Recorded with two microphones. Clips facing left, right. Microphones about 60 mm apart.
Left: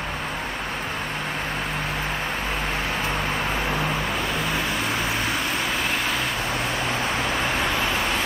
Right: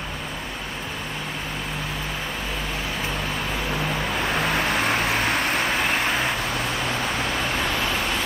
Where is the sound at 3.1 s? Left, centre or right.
Left.